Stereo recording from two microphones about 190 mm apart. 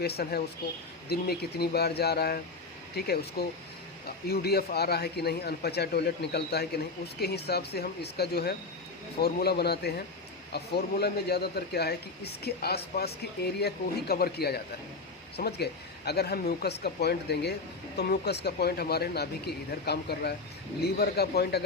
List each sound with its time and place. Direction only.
0.0 s a man's voice: 55° left (ahead or behind)